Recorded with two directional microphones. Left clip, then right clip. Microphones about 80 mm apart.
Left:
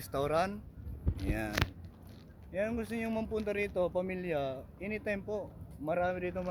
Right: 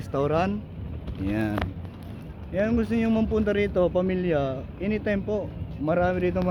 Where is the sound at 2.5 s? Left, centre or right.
Left.